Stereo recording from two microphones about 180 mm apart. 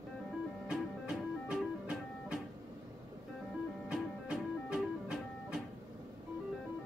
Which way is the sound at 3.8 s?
5° right (ahead or behind).